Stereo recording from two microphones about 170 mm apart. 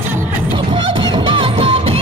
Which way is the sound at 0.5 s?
30° right (ahead or behind).